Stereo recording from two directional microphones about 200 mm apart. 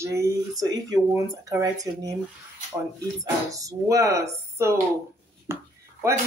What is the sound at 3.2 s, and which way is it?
Speech, 15° right (ahead or behind).